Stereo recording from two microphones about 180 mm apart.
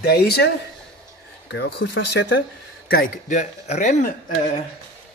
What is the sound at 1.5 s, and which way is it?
Speech, 70° left (ahead or behind).